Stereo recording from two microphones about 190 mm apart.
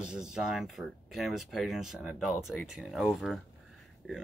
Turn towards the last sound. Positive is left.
turn(degrees=0)  # may be behind; listen again after turning